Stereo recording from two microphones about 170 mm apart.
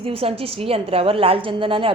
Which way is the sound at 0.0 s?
35° right (ahead or behind).